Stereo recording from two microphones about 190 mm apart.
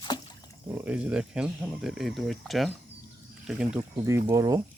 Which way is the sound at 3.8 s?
15° right (ahead or behind).